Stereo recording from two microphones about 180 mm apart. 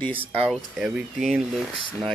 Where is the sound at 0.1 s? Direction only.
30° right (ahead or behind).